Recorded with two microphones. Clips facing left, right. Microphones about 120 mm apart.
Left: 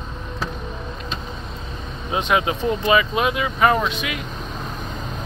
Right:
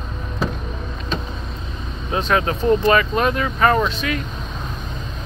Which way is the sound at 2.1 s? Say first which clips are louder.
Right 1 dB; 15° left (ahead or behind).